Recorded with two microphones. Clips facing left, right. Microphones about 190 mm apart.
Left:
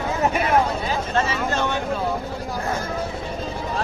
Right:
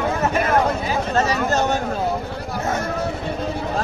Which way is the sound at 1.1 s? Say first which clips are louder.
Right 4 dB; 40° right (ahead or behind).